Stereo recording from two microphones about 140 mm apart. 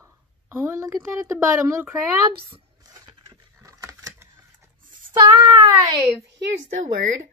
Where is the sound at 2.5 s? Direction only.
30° right (ahead or behind).